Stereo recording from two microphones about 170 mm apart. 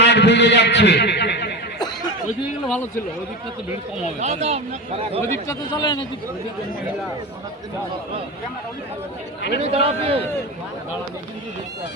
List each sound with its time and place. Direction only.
0.0 s a man's voice: 90° left
1.8 s a sound: 25° left (ahead or behind)
2.6 s speech: 5° left (ahead or behind)
4.2 s speech: 40° right (ahead or behind)
5.5 s a man's voice: 25° left (ahead or behind)
9.6 s speech: 40° right (ahead or behind)